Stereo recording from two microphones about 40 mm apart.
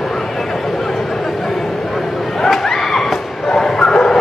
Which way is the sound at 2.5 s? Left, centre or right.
Centre.